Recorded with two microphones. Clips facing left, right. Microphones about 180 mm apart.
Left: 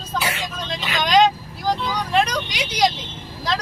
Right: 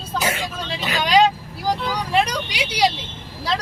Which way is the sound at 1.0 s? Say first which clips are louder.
Even; 10° right (ahead or behind).